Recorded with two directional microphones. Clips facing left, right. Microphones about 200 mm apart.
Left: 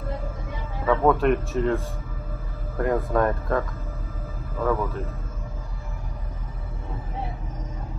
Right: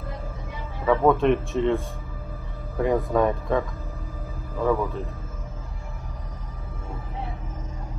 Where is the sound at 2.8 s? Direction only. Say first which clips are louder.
Right 1 dB; centre (ahead or behind).